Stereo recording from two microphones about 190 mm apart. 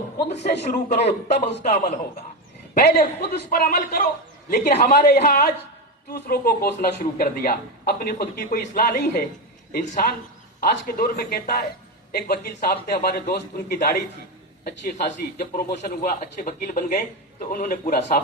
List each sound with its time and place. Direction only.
0.6 s a man's voice: 35° left (ahead or behind)
2.7 s speech: 50° left (ahead or behind)
15.4 s speech: 40° left (ahead or behind)